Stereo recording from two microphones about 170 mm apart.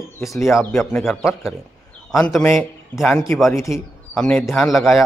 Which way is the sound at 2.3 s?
Centre (ahead or behind).